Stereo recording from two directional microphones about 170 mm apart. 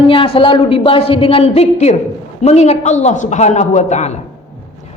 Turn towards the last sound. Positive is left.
turn(degrees=40)  # may be behind; listen again after turning